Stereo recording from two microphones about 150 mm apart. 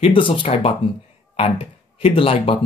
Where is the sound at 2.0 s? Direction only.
40° left (ahead or behind).